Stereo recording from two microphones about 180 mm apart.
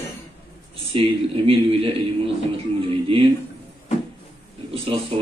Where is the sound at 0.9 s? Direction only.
30° right (ahead or behind).